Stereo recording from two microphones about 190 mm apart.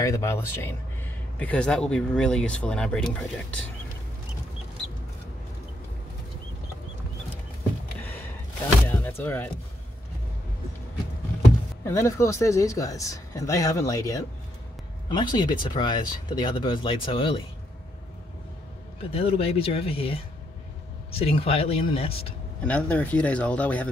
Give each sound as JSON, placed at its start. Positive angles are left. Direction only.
{"t": 0.0, "sound": "speech", "side_deg": 15}
{"t": 8.0, "sound": "a sound", "side_deg": 10}
{"t": 8.8, "sound": "speech", "side_deg": 10}
{"t": 11.8, "sound": "speech", "side_deg": 15}
{"t": 19.1, "sound": "speech", "side_deg": 30}
{"t": 22.7, "sound": "speech", "side_deg": 5}